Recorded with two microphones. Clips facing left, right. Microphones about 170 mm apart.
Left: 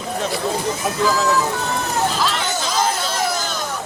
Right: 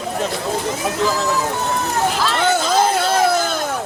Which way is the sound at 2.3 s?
55° right (ahead or behind).